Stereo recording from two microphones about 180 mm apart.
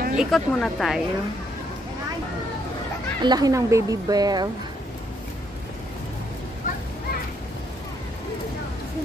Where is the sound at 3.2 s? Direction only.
20° right (ahead or behind).